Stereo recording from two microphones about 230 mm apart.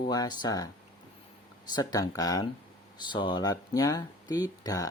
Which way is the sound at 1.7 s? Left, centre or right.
Centre.